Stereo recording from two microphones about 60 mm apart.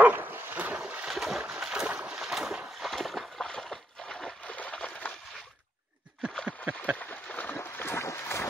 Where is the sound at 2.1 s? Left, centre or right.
Centre.